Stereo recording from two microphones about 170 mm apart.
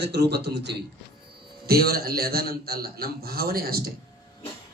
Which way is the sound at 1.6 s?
65° right (ahead or behind).